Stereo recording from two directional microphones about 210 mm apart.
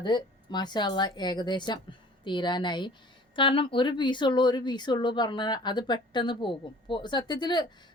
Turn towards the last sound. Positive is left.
turn(degrees=20)  # may be behind; listen again after turning